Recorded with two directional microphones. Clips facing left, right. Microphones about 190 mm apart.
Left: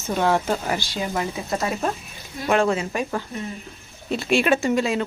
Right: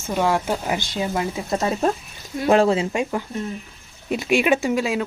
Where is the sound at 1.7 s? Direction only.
35° right (ahead or behind).